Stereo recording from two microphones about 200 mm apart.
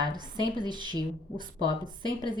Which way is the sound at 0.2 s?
20° right (ahead or behind).